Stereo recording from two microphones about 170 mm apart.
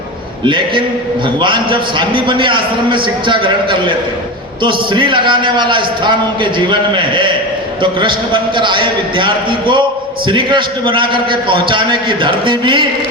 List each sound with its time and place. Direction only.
0.4 s a man's voice: 30° right (ahead or behind)